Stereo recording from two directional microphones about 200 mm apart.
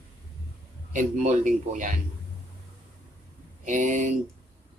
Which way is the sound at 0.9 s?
40° right (ahead or behind).